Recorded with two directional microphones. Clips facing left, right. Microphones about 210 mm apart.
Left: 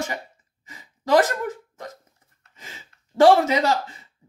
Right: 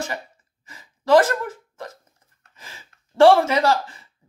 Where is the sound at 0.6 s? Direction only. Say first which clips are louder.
Right 4 dB; 15° left (ahead or behind).